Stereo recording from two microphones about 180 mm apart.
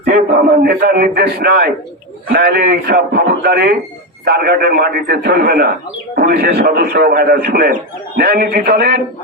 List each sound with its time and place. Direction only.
0.6 s a man's voice: 55° right (ahead or behind)